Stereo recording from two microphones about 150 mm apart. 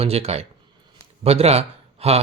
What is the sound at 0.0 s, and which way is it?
Speech, 40° right (ahead or behind).